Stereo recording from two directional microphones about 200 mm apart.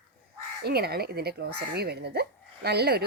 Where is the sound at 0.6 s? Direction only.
50° right (ahead or behind).